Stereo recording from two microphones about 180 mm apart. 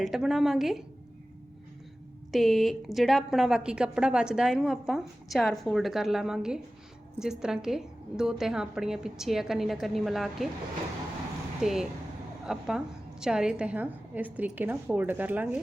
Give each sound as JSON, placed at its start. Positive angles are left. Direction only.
{"t": 0.0, "sound": "a woman's voice", "side_deg": 0}
{"t": 2.3, "sound": "a woman's voice", "side_deg": 0}
{"t": 11.6, "sound": "a woman's voice", "side_deg": 0}